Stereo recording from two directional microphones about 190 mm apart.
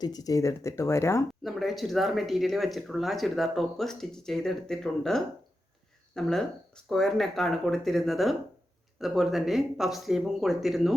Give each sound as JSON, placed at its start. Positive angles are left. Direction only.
{"t": 0.0, "sound": "speech", "side_deg": 20}
{"t": 1.5, "sound": "speech", "side_deg": 0}